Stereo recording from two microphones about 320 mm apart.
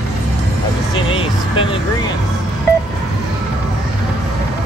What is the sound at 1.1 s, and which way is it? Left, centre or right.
Music, centre.